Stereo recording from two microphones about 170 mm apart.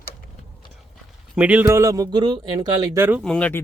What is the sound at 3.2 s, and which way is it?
Speech, 5° left (ahead or behind).